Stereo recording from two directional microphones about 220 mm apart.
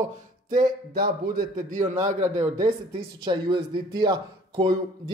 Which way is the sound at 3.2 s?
20° right (ahead or behind).